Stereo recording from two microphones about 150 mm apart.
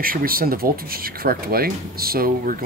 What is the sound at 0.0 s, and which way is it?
Speech, 75° right (ahead or behind).